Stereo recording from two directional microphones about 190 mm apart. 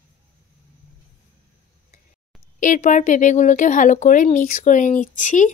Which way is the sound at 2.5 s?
40° left (ahead or behind).